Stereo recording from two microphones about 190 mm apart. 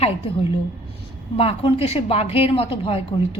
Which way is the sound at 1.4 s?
30° left (ahead or behind).